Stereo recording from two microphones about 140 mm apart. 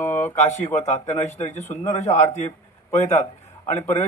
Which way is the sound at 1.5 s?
55° left (ahead or behind).